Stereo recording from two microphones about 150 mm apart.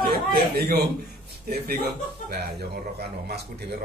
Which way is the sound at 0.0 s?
90° right.